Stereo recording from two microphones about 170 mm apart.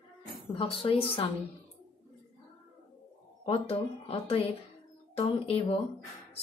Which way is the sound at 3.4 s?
35° left (ahead or behind).